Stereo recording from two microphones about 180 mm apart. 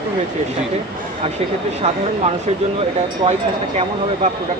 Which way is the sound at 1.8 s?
40° right (ahead or behind).